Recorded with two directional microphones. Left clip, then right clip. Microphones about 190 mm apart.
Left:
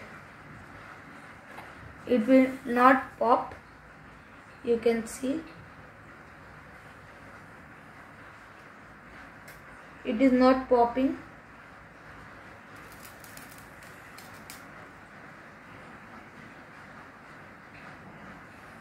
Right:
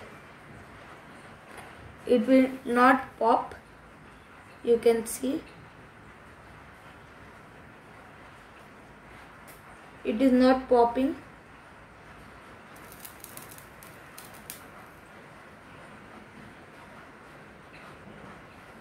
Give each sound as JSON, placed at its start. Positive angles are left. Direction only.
{"t": 2.0, "sound": "a woman's voice", "side_deg": -20}
{"t": 4.6, "sound": "a woman's voice", "side_deg": -20}
{"t": 10.0, "sound": "a woman's voice", "side_deg": -15}